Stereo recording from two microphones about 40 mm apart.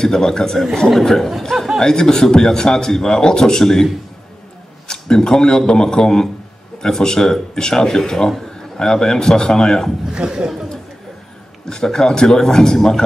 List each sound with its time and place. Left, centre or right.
0.0 s speech: centre
10.1 s speech: centre
11.7 s speech: centre